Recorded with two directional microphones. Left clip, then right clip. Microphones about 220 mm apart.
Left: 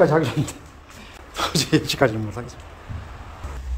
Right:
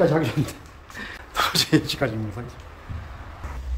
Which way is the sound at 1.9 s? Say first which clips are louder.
Left 6 dB; 15° left (ahead or behind).